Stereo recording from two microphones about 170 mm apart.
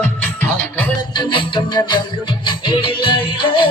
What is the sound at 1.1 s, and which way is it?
Music, 30° left (ahead or behind).